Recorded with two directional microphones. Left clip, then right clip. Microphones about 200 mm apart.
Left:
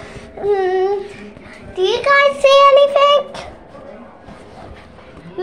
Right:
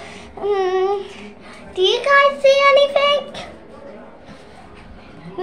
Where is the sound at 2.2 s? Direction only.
30° left (ahead or behind).